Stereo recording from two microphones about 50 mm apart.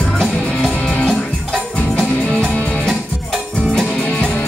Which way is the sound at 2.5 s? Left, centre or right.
Centre.